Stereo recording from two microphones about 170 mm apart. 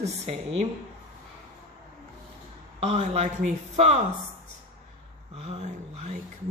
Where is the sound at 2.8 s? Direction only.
40° right (ahead or behind).